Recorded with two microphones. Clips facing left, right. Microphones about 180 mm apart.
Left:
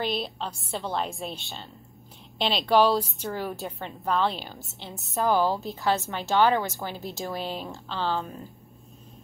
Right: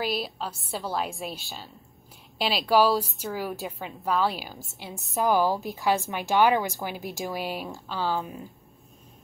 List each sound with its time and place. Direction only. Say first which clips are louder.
0.0 s a woman's voice: even; 5° right (ahead or behind)
5.2 s a woman's voice: even; 10° right (ahead or behind)
5.6 s a woman's voice: right 1 dB; 20° left (ahead or behind)
5.9 s a woman's voice: right 1 dB; 15° right (ahead or behind)